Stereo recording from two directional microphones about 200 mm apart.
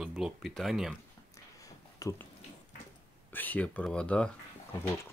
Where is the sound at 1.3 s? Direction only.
15° left (ahead or behind).